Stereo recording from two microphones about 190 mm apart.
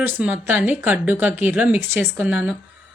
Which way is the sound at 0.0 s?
10° right (ahead or behind).